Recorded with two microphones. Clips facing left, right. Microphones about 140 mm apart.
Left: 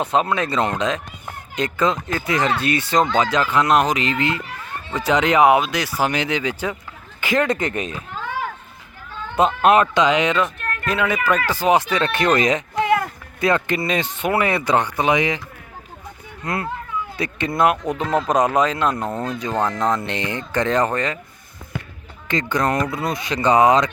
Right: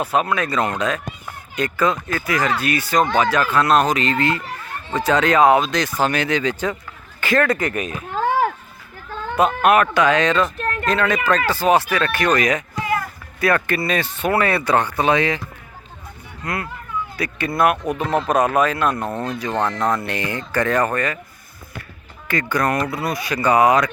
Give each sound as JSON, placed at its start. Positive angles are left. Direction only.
{"t": 0.0, "sound": "speech", "side_deg": 25}
{"t": 8.1, "sound": "a sound", "side_deg": -45}
{"t": 9.3, "sound": "speech", "side_deg": 25}
{"t": 10.6, "sound": "a sound", "side_deg": -25}
{"t": 10.8, "sound": "speech", "side_deg": 10}
{"t": 16.4, "sound": "speech", "side_deg": 25}
{"t": 22.3, "sound": "speech", "side_deg": 20}